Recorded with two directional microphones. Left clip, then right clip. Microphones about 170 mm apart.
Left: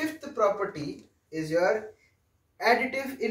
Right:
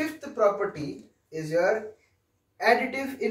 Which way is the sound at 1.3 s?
20° left (ahead or behind).